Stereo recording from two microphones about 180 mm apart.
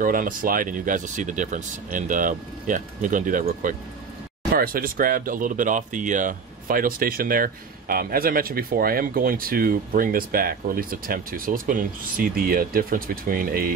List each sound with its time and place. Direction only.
0.0 s speech: 50° right (ahead or behind)